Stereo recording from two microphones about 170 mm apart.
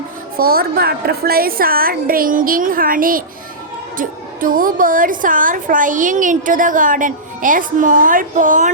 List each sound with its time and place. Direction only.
0.3 s a woman's voice: 60° right (ahead or behind)